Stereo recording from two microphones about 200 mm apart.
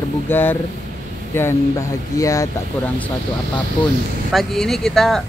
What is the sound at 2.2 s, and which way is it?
Speech, 15° left (ahead or behind).